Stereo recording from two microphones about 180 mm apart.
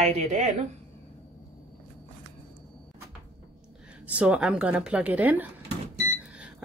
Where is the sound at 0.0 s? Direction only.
35° right (ahead or behind).